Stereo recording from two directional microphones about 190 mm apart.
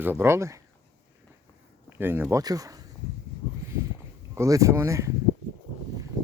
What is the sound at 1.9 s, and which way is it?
Speech, 10° right (ahead or behind).